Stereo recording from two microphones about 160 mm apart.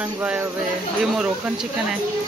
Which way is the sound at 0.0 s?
10° right (ahead or behind).